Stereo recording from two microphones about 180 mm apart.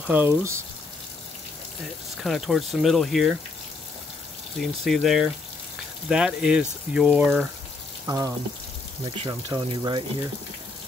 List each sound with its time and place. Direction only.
0.0 s speech: 10° right (ahead or behind)
2.2 s speech: centre (ahead or behind)
4.6 s speech: centre (ahead or behind)
8.1 s speech: 15° right (ahead or behind)
9.0 s speech: 30° right (ahead or behind)